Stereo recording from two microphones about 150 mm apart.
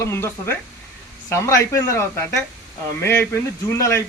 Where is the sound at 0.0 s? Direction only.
15° left (ahead or behind).